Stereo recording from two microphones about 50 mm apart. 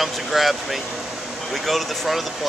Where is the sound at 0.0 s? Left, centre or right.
Centre.